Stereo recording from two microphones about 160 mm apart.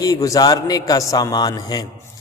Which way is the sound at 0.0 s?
20° left (ahead or behind).